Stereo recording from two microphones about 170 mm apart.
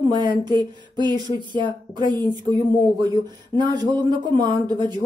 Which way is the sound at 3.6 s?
25° right (ahead or behind).